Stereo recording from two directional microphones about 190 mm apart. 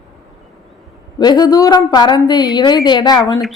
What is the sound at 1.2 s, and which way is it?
A woman's voice, 20° left (ahead or behind).